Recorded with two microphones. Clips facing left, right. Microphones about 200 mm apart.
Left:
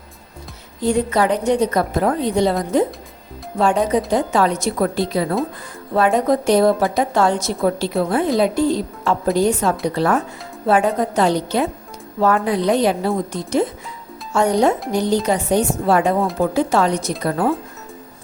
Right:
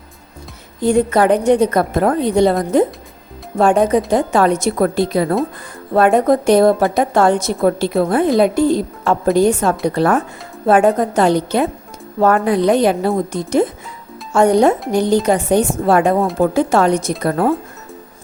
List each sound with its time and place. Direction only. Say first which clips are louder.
0.8 s a woman's voice: right 4 dB; 50° right (ahead or behind)